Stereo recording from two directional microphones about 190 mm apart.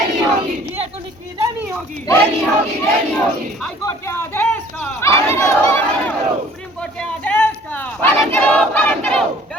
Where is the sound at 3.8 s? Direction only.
15° left (ahead or behind).